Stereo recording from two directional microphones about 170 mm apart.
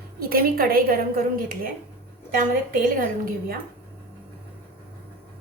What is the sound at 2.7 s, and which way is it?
Speech, 55° right (ahead or behind).